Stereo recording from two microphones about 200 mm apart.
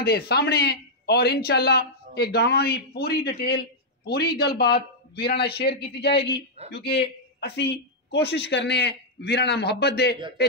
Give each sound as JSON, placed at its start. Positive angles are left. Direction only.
{"t": 0.0, "sound": "a man's voice", "side_deg": 55}